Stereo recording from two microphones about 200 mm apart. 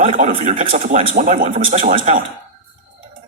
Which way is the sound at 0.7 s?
40° right (ahead or behind).